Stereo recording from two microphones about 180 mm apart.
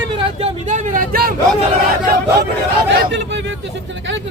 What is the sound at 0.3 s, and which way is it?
Vehicle, 35° right (ahead or behind).